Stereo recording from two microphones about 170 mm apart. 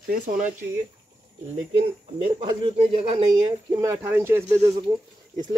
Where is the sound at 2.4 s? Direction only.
30° right (ahead or behind).